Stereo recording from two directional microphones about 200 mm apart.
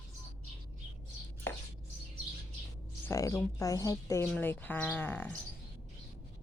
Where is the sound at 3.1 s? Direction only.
15° left (ahead or behind).